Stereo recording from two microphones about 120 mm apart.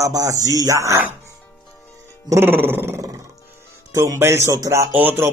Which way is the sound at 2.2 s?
20° right (ahead or behind).